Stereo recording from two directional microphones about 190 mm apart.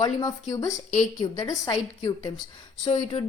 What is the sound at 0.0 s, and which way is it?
Speech, 20° left (ahead or behind).